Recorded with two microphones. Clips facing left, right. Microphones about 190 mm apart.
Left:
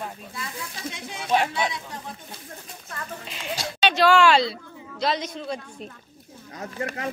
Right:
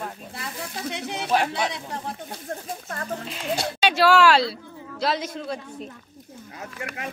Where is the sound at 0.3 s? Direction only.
65° right (ahead or behind).